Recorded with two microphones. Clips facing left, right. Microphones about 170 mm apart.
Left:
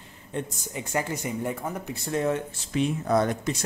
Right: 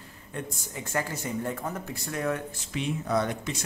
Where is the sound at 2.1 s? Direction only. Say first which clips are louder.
Left 4 dB; 25° left (ahead or behind).